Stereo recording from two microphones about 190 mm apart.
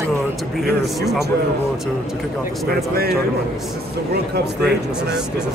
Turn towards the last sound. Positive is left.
turn(degrees=-60)  # may be behind; listen again after turning